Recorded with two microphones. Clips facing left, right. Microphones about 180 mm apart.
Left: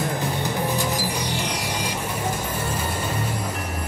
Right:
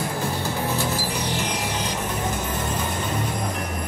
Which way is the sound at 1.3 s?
10° left (ahead or behind).